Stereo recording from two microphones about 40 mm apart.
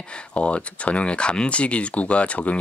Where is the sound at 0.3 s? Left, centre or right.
Left.